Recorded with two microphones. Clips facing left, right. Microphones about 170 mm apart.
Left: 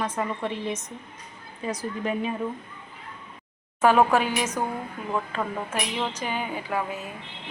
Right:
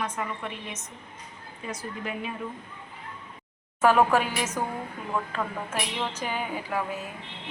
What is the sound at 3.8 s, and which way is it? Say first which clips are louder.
Speech: left 1 dB; 5° right (ahead or behind).